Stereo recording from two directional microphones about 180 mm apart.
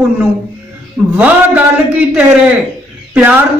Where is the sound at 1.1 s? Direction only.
10° right (ahead or behind).